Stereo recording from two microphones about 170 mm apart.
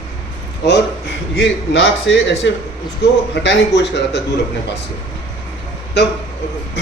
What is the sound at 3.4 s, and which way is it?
Speech, 90° left.